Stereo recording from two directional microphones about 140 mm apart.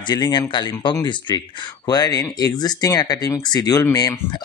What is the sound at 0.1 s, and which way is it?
Speech, 30° left (ahead or behind).